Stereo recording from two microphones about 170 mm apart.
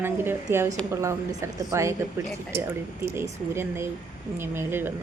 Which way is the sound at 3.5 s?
15° right (ahead or behind).